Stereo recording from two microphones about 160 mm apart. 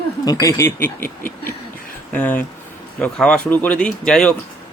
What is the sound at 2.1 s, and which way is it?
Speech, 10° left (ahead or behind).